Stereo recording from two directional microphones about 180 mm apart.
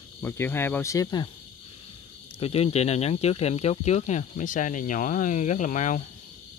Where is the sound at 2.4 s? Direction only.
35° left (ahead or behind).